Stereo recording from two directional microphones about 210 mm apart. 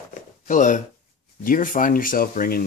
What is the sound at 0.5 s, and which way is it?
Speech, 35° left (ahead or behind).